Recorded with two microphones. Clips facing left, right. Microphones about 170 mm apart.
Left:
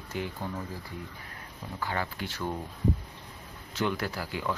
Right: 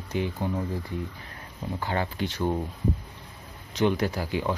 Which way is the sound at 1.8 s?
25° right (ahead or behind).